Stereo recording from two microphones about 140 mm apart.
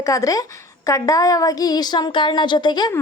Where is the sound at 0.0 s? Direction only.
25° left (ahead or behind).